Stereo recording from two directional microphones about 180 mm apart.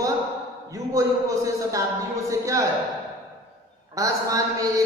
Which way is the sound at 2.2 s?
15° right (ahead or behind).